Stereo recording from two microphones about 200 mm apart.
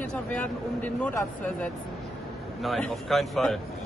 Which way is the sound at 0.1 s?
5° left (ahead or behind).